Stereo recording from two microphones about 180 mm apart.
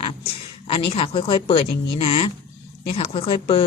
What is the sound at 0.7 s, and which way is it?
Speech, 30° left (ahead or behind).